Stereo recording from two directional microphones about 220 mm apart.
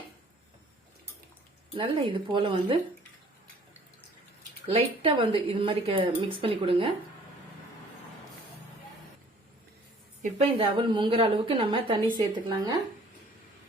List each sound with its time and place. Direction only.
1.7 s a woman's voice: 25° right (ahead or behind)
4.7 s a woman's voice: 25° right (ahead or behind)
10.3 s a woman's voice: 25° right (ahead or behind)